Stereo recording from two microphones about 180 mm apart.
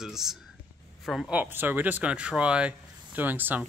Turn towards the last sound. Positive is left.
turn(degrees=-10)  # may be behind; listen again after turning